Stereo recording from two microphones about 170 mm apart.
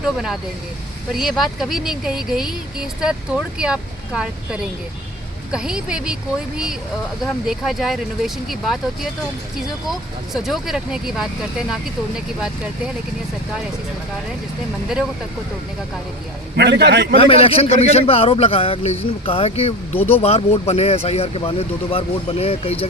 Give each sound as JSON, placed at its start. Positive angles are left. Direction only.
{"t": 0.0, "sound": "speech", "side_deg": -5}
{"t": 7.4, "sound": "speech", "side_deg": 0}
{"t": 16.6, "sound": "a man's voice", "side_deg": -75}
{"t": 17.2, "sound": "speech", "side_deg": 35}